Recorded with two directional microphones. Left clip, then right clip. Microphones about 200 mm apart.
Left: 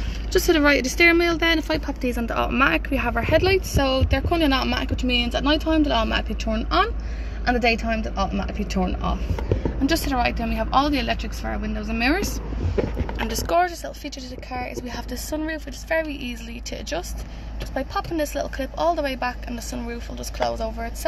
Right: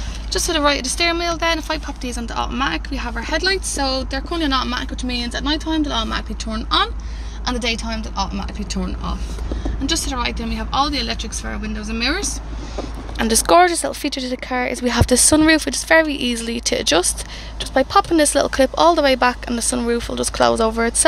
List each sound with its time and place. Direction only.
0.3 s speech: centre (ahead or behind)
9.8 s a woman's voice: 25° left (ahead or behind)
13.2 s a woman's voice: 30° right (ahead or behind)